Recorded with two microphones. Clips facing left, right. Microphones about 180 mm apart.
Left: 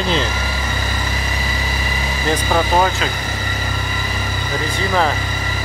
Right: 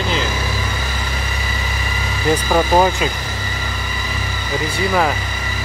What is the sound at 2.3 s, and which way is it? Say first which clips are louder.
Speech: right 2 dB; 10° right (ahead or behind).